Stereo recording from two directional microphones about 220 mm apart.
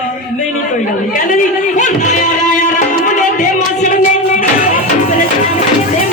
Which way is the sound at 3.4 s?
35° left (ahead or behind).